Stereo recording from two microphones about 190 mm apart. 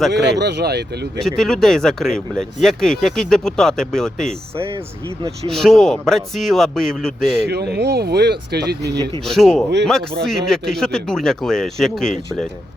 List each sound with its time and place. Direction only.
0.1 s speech: 60° right (ahead or behind)
1.2 s speech: centre (ahead or behind)
5.5 s speech: centre (ahead or behind)
7.4 s speech: 60° right (ahead or behind)
9.2 s speech: centre (ahead or behind)